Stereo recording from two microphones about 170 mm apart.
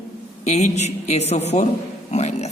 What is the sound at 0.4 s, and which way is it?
Speech, 40° left (ahead or behind).